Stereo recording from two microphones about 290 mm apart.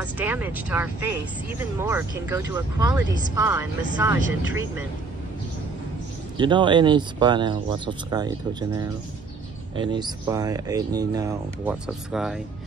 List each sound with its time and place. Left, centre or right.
0.0 s speech: centre
6.3 s speech: centre